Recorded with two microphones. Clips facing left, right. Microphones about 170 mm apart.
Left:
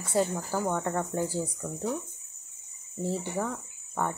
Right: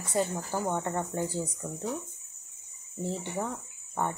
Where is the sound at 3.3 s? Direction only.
10° right (ahead or behind).